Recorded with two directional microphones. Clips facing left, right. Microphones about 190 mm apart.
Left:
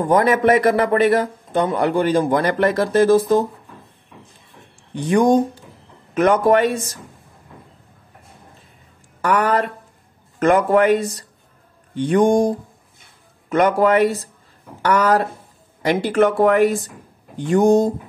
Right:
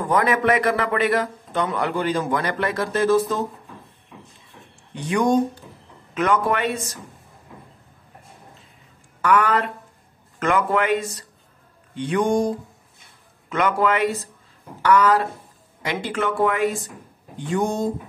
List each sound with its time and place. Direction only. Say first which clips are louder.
0.0 s speech: left 5 dB; 30° left (ahead or behind)
0.3 s a man's voice: left 5 dB; 45° left (ahead or behind)
5.0 s a man's voice: left 4 dB; 50° left (ahead or behind)
9.2 s a man's voice: left 2 dB; 40° left (ahead or behind)